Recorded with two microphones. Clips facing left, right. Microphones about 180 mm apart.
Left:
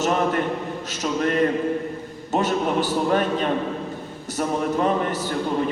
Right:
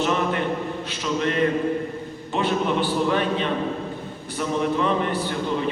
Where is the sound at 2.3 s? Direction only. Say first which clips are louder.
Left 1 dB; 40° left (ahead or behind).